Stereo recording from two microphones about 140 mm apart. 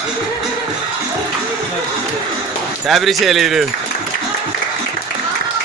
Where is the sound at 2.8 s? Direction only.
Centre (ahead or behind).